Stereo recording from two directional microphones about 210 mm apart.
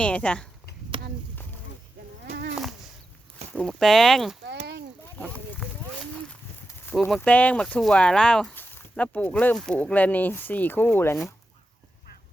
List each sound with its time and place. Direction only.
0.0 s speech: 5° left (ahead or behind)
2.2 s a sound: 50° right (ahead or behind)
3.5 s speech: 5° left (ahead or behind)
6.9 s speech: centre (ahead or behind)